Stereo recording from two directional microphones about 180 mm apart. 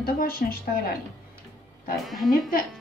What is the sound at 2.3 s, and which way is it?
Speech, 55° left (ahead or behind).